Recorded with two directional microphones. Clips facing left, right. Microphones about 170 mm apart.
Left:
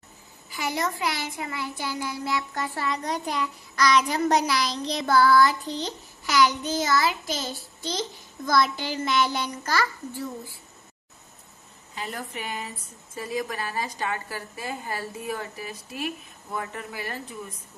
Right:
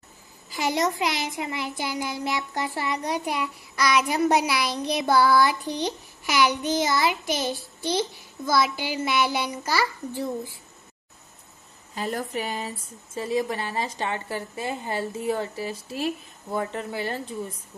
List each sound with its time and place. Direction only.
0.6 s child singing: 20° right (ahead or behind)
11.9 s speech: 40° right (ahead or behind)